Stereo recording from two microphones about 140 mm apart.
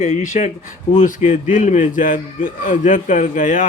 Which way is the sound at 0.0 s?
60° left (ahead or behind).